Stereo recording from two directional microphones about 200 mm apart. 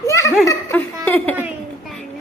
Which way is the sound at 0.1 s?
15° left (ahead or behind).